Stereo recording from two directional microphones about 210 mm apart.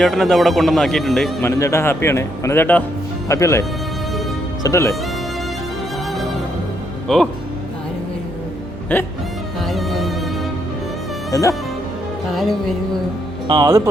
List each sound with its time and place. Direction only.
0.0 s a man's voice: centre (ahead or behind)
1.4 s speech: 15° left (ahead or behind)
7.1 s a man's voice: 5° left (ahead or behind)
8.9 s speech: 10° left (ahead or behind)
9.6 s music: centre (ahead or behind)
11.3 s speech: 15° left (ahead or behind)
12.3 s a man's voice: centre (ahead or behind)
13.5 s speech: 15° right (ahead or behind)